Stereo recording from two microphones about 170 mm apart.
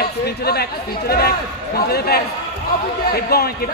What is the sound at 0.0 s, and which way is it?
A man's voice, 70° left (ahead or behind).